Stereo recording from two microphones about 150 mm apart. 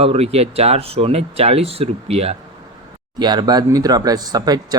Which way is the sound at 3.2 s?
30° right (ahead or behind).